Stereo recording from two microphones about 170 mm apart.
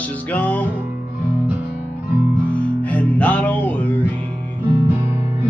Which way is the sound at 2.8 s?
10° left (ahead or behind).